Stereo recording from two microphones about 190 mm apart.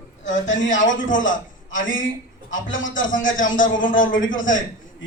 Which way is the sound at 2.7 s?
90° left.